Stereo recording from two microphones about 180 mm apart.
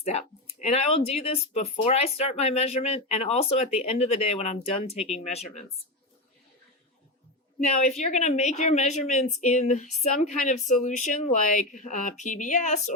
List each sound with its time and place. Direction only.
0.0 s speech: 35° left (ahead or behind)
7.7 s speech: 40° left (ahead or behind)